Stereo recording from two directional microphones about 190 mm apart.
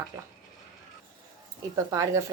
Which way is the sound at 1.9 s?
15° right (ahead or behind).